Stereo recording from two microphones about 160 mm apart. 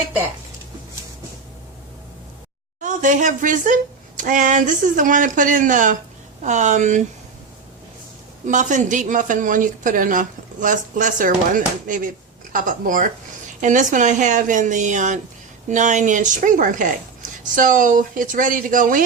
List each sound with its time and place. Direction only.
2.8 s speech: 50° right (ahead or behind)
8.4 s speech: 50° right (ahead or behind)